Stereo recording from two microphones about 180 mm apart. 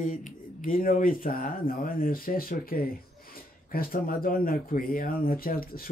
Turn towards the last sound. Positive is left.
turn(degrees=55)  # may be behind; listen again after turning